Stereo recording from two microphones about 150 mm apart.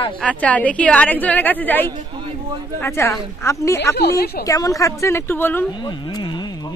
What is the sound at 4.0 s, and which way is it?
Speech, 90° left.